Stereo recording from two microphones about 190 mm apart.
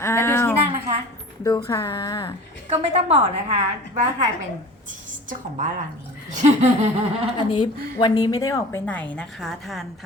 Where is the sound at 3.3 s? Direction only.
35° right (ahead or behind).